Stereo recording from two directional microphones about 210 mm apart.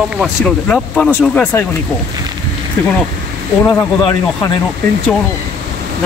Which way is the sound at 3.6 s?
15° left (ahead or behind).